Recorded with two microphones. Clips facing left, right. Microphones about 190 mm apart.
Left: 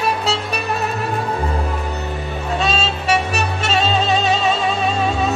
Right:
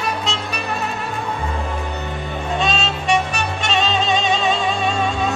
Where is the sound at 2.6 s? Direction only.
5° left (ahead or behind).